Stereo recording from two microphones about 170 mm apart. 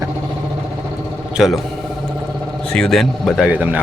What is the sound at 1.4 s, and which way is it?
Speech, 5° right (ahead or behind).